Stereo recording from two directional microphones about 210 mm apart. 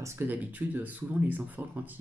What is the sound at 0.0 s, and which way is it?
Speech, 10° right (ahead or behind).